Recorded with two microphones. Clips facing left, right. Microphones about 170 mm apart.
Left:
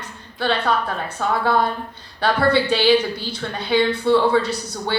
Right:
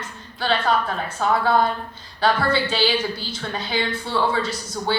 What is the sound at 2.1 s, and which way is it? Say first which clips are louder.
Speech: left 2 dB; 60° left (ahead or behind).